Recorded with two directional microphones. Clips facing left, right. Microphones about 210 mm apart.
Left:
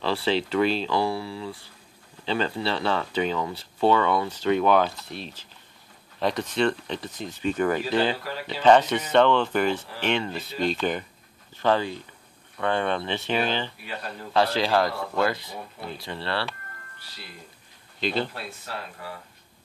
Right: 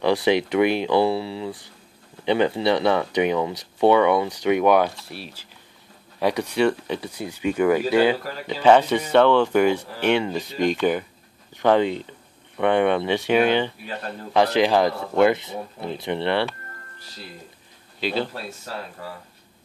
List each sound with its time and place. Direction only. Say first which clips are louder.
0.0 s a man's voice: right 6 dB; 15° right (ahead or behind)
18.0 s speech: right 2 dB; 5° right (ahead or behind)